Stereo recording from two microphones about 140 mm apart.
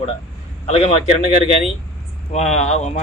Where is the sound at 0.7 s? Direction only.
45° left (ahead or behind).